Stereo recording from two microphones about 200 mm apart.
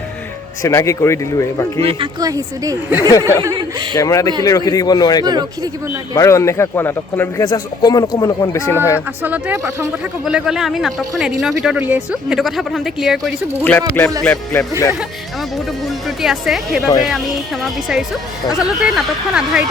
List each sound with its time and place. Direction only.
0.6 s speech: 15° left (ahead or behind)
1.8 s speech: 25° right (ahead or behind)
3.0 s speech: 15° left (ahead or behind)
3.4 s speech: 20° right (ahead or behind)
3.9 s speech: 15° left (ahead or behind)
5.2 s speech: 20° right (ahead or behind)
6.1 s speech: 15° left (ahead or behind)
9.2 s speech: 10° right (ahead or behind)
10.3 s speech: 5° right (ahead or behind)